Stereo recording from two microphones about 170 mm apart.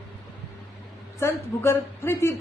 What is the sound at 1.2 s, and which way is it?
A woman's voice, 15° left (ahead or behind).